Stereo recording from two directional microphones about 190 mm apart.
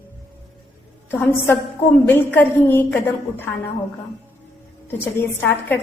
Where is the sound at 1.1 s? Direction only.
10° left (ahead or behind).